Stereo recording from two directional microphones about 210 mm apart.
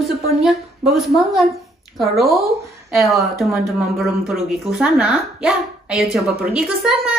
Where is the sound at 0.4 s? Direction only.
Centre (ahead or behind).